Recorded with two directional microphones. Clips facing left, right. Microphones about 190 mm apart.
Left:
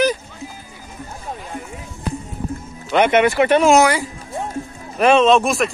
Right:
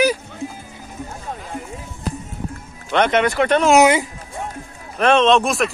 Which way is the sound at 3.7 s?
20° right (ahead or behind).